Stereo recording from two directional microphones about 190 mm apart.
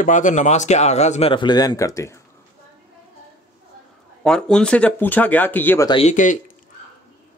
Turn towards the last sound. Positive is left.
turn(degrees=40)  # may be behind; listen again after turning